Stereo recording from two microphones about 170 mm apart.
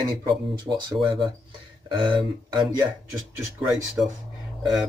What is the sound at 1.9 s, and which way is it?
Speech, 30° right (ahead or behind).